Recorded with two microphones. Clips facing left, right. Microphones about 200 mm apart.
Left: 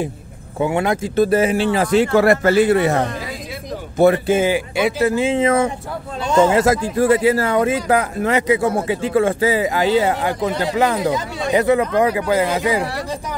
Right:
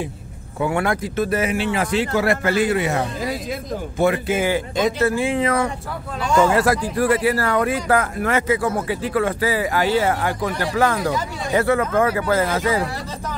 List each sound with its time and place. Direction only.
0.6 s speech: 20° left (ahead or behind)
2.0 s speech: 45° left (ahead or behind)
4.0 s speech: 35° left (ahead or behind)
4.4 s speech: 15° left (ahead or behind)